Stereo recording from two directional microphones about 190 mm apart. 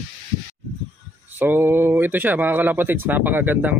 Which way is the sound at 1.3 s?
10° right (ahead or behind).